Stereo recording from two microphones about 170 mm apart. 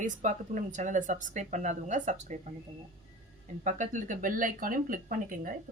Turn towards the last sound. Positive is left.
turn(degrees=-55)  # may be behind; listen again after turning